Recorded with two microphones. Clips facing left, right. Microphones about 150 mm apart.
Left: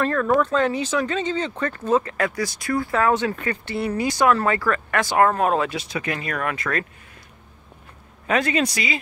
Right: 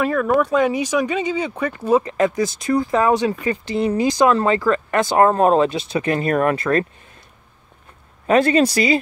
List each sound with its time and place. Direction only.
0.0 s speech: 10° right (ahead or behind); by 6.9 s 30° right (ahead or behind)
8.3 s speech: 35° right (ahead or behind)